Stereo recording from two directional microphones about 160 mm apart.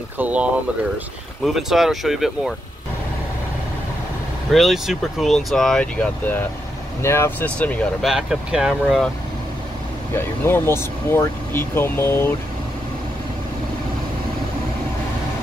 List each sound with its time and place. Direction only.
0.2 s speech: 10° right (ahead or behind)
4.5 s speech: centre (ahead or behind)
8.1 s speech: 5° right (ahead or behind)
10.1 s speech: 15° left (ahead or behind)